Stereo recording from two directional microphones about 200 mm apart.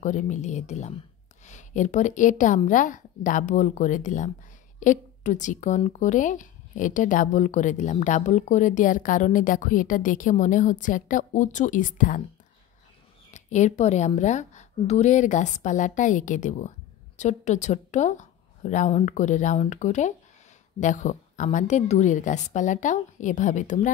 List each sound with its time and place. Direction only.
0.0 s speech: 40° left (ahead or behind)
13.3 s speech: 35° left (ahead or behind)